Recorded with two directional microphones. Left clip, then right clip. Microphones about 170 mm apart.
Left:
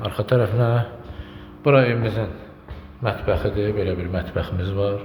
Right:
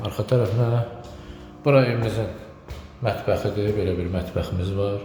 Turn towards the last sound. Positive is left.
turn(degrees=-10)  # may be behind; listen again after turning